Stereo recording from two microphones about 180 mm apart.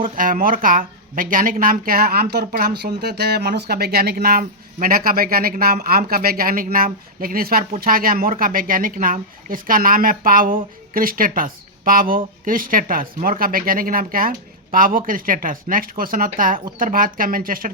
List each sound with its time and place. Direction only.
0.0 s speech: 50° right (ahead or behind)